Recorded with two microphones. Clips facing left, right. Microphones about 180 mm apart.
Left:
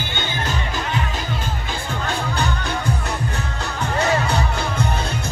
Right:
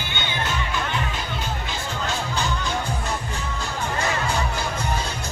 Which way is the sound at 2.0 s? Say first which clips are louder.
Left 3 dB; 60° left (ahead or behind).